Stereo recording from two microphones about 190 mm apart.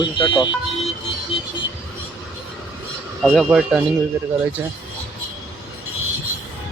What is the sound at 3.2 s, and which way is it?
Speech, centre (ahead or behind).